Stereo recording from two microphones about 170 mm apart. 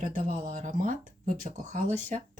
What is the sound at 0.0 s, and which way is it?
Speech, 50° right (ahead or behind).